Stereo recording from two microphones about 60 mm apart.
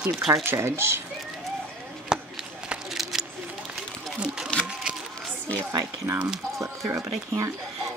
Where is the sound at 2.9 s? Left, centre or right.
Centre.